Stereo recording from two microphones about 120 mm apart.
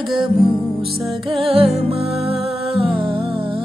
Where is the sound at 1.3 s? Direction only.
50° right (ahead or behind).